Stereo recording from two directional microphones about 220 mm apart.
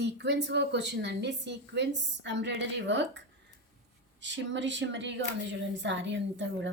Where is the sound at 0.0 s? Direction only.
50° right (ahead or behind).